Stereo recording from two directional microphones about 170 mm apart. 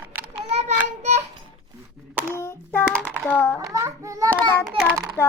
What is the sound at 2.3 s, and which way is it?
Child singing, 15° left (ahead or behind).